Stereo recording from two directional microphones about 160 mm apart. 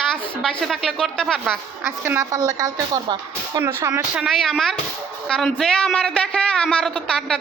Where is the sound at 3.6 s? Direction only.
10° right (ahead or behind).